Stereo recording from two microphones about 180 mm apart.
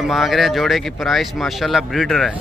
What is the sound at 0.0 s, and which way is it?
Speech, centre (ahead or behind).